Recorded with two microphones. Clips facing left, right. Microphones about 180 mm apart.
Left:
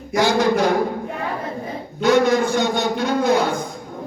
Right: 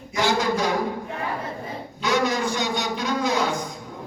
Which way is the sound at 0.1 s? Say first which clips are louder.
Left 5 dB; 70° left (ahead or behind).